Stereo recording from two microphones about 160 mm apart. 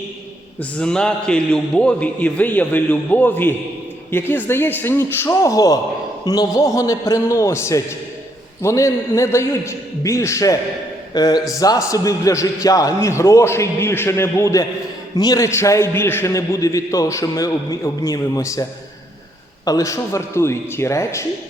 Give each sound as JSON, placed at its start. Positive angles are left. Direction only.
{"t": 0.6, "sound": "a man's voice", "side_deg": 5}
{"t": 19.6, "sound": "a man's voice", "side_deg": 20}